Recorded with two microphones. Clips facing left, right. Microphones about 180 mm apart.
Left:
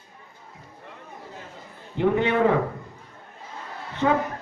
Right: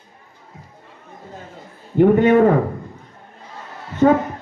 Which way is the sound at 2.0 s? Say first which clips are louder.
Right 8 dB; 45° right (ahead or behind).